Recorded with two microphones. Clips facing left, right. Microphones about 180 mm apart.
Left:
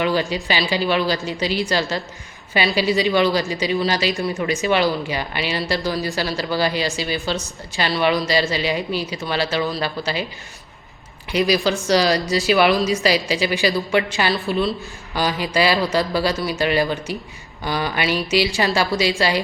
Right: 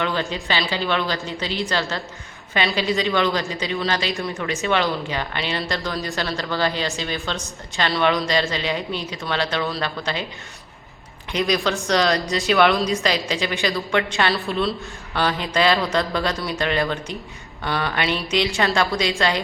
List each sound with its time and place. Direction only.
0.0 s a woman's voice: 10° left (ahead or behind)
4.4 s a woman's voice: 15° left (ahead or behind)
11.3 s a woman's voice: 5° left (ahead or behind)